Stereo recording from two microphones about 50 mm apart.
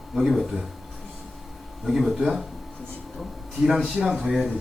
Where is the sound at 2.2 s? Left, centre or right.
Centre.